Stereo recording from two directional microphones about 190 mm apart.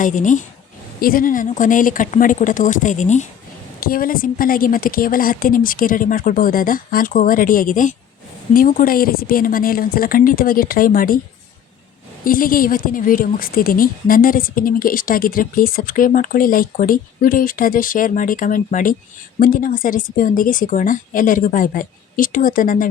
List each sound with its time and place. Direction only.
0.0 s a woman's voice: 40° left (ahead or behind)
12.2 s a woman's voice: 50° left (ahead or behind)